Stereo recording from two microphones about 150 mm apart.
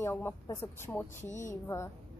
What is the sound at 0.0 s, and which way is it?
Speech, 15° left (ahead or behind).